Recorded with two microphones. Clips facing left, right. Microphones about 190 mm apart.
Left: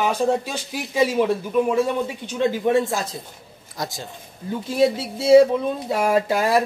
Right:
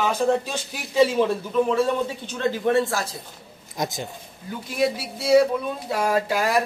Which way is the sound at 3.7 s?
20° right (ahead or behind).